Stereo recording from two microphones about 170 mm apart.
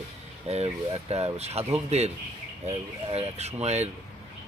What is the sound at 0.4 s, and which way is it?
Speech, 40° right (ahead or behind).